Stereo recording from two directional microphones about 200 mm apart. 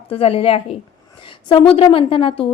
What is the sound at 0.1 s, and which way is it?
A woman's voice, 30° left (ahead or behind).